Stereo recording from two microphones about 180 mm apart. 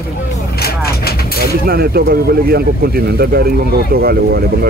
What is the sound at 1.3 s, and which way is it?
Speech, 60° right (ahead or behind).